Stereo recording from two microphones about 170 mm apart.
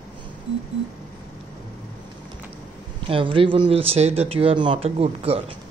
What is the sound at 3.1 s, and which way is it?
Speech, 30° right (ahead or behind).